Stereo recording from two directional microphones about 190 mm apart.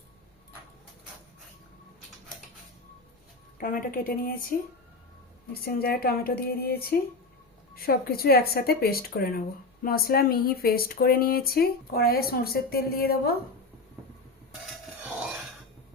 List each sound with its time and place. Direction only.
3.6 s speech: 45° left (ahead or behind)
5.6 s speech: 55° left (ahead or behind)